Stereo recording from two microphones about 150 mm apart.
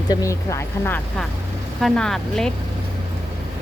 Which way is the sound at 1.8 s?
5° left (ahead or behind).